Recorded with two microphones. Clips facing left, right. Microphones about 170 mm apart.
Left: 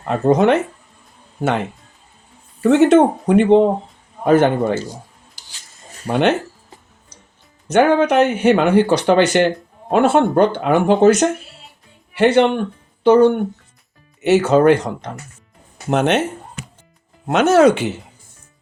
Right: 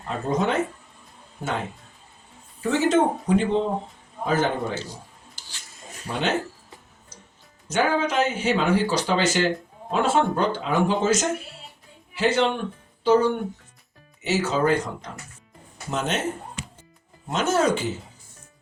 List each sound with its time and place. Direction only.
0.0 s speech: 65° left (ahead or behind)
2.6 s speech: 65° left (ahead or behind)
6.1 s speech: 65° left (ahead or behind)
7.7 s speech: 65° left (ahead or behind)
15.9 s speech: 65° left (ahead or behind)
17.2 s speech: 70° left (ahead or behind)